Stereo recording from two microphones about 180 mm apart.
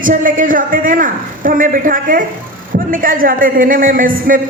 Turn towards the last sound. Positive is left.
turn(degrees=-50)  # may be behind; listen again after turning